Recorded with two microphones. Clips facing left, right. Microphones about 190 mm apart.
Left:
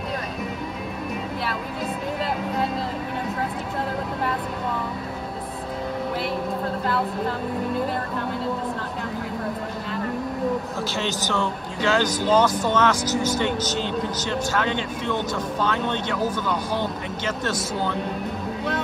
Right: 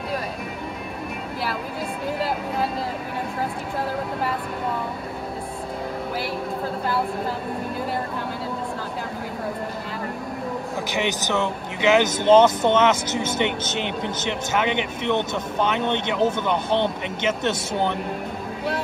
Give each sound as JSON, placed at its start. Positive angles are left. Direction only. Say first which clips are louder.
{"t": 10.9, "sound": "speech", "louder": "right 3 dB", "side_deg": -15}